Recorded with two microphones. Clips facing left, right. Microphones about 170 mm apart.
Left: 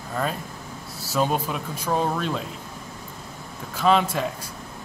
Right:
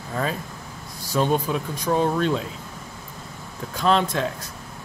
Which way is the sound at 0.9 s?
5° left (ahead or behind).